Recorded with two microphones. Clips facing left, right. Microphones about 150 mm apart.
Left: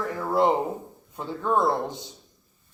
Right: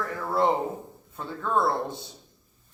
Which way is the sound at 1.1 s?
20° left (ahead or behind).